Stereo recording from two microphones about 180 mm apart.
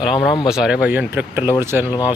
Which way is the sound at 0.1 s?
25° left (ahead or behind).